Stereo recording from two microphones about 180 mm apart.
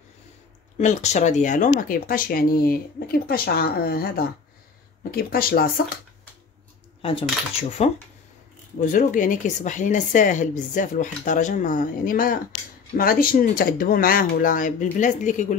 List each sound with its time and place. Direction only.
0.7 s speech: 40° left (ahead or behind); by 5.7 s 55° left (ahead or behind)
7.0 s speech: 30° left (ahead or behind)
8.9 s speech: 45° left (ahead or behind)